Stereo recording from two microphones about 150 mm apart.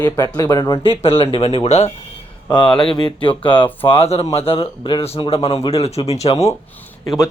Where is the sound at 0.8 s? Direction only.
40° left (ahead or behind).